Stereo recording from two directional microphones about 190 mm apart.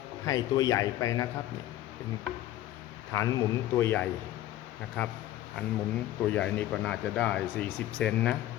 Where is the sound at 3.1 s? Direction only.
15° left (ahead or behind).